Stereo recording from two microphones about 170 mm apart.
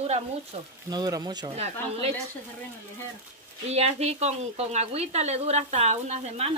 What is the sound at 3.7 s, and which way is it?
Speech, 40° right (ahead or behind).